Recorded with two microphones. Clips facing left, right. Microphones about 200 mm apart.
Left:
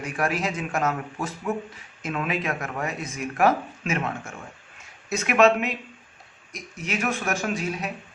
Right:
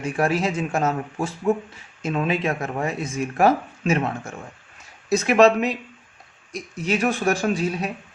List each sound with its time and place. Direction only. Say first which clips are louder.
0.0 s speech: right 5 dB; 30° right (ahead or behind)